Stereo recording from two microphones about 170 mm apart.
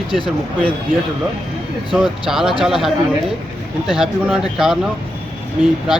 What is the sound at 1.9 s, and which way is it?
Speech, centre (ahead or behind).